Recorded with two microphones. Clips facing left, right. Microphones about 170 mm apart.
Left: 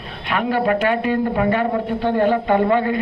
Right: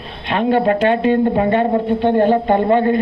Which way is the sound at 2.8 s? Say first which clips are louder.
Right 5 dB; 45° right (ahead or behind).